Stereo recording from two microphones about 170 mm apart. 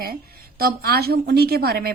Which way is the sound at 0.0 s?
60° right (ahead or behind).